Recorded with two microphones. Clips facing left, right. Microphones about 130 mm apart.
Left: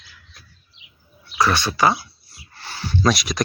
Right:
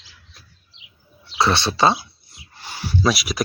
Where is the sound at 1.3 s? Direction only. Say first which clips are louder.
Even; 25° right (ahead or behind); by 3.4 s 5° right (ahead or behind).